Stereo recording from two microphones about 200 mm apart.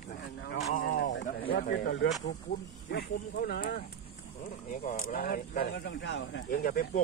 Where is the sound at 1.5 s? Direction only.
50° left (ahead or behind).